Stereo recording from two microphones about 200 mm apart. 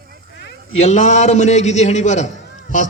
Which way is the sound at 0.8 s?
35° left (ahead or behind).